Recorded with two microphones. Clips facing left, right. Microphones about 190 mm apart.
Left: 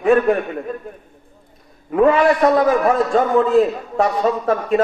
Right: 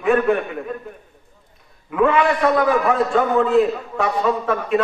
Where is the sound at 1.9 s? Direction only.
40° left (ahead or behind).